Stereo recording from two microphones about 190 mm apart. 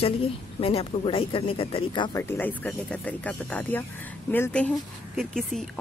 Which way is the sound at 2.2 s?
10° left (ahead or behind).